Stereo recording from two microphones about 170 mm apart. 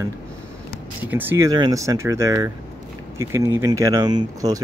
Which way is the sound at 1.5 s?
25° right (ahead or behind).